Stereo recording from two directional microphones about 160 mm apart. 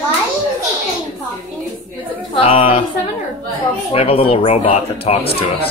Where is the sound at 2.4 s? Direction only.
35° left (ahead or behind).